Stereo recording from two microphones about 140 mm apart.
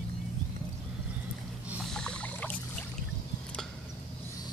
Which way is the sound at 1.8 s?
5° left (ahead or behind).